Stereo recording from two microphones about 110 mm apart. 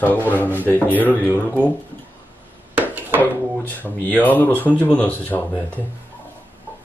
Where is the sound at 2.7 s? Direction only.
15° right (ahead or behind).